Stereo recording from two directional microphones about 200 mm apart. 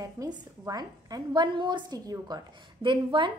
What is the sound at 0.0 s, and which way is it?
A woman's voice, 20° right (ahead or behind).